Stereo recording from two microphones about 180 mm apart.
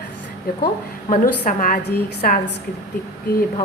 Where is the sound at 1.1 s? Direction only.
50° left (ahead or behind).